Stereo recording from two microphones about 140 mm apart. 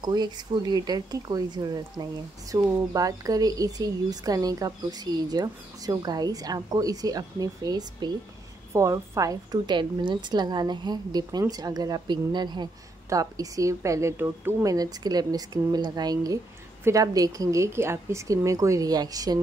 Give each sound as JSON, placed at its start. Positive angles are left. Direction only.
{"t": 0.0, "sound": "speech", "side_deg": -30}